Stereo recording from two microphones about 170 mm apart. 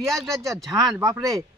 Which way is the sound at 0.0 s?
Centre (ahead or behind).